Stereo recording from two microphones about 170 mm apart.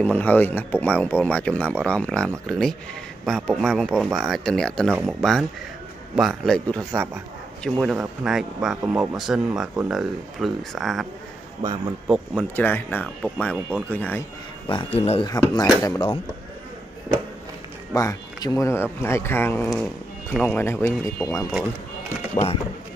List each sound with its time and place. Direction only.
0.0 s speech: 10° left (ahead or behind)
12.5 s speech: 10° left (ahead or behind)
14.7 s speech: 35° left (ahead or behind)
15.2 s speech: 20° left (ahead or behind)
17.9 s speech: 20° left (ahead or behind)
22.3 s speech: 35° left (ahead or behind)